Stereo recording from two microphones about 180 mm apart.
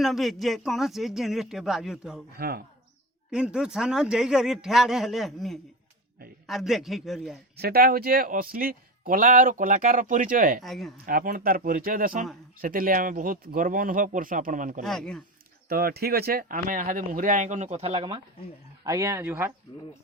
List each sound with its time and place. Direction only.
0.0 s a man's voice: centre (ahead or behind)
2.4 s speech: 60° right (ahead or behind)
3.2 s a man's voice: 5° right (ahead or behind)
7.5 s a man's voice: 60° right (ahead or behind)
10.6 s a man's voice: centre (ahead or behind)
10.9 s a man's voice: 55° right (ahead or behind)
14.8 s a man's voice: 5° left (ahead or behind)
15.7 s a man's voice: 60° right (ahead or behind); by 18.2 s 30° right (ahead or behind)
18.9 s speech: 15° right (ahead or behind)
19.7 s speech: 20° left (ahead or behind)